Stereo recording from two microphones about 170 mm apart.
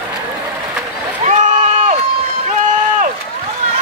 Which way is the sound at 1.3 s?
45° right (ahead or behind).